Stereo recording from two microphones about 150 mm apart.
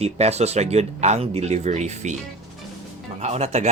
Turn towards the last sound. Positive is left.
turn(degrees=-45)  # may be behind; listen again after turning